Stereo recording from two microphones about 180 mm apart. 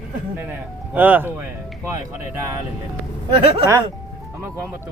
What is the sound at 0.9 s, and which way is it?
Speech, 10° right (ahead or behind).